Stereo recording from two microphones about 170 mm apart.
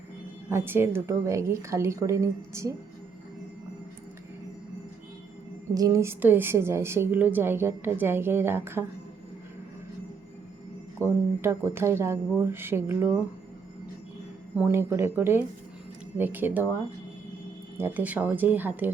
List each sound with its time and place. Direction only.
0.5 s a woman's voice: 15° right (ahead or behind)
5.7 s a woman's voice: 20° right (ahead or behind)
11.0 s a woman's voice: 15° right (ahead or behind)
14.5 s a woman's voice: 10° right (ahead or behind)
17.7 s a woman's voice: 10° right (ahead or behind)